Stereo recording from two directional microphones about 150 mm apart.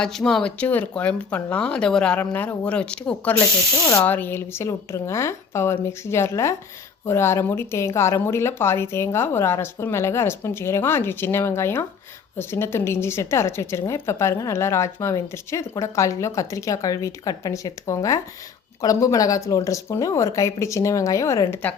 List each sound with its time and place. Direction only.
0.0 s a woman's voice: 5° left (ahead or behind)